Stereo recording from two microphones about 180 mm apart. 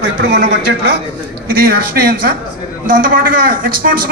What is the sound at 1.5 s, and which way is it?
A man's voice, 60° right (ahead or behind).